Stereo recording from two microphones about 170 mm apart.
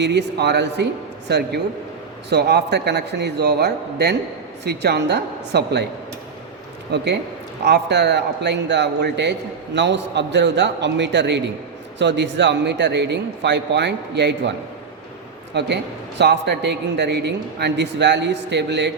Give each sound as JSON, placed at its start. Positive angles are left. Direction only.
{"t": 0.0, "sound": "a man's voice", "side_deg": -80}
{"t": 1.3, "sound": "a man's voice", "side_deg": -75}
{"t": 6.9, "sound": "a man's voice", "side_deg": -80}
{"t": 15.5, "sound": "a man's voice", "side_deg": -90}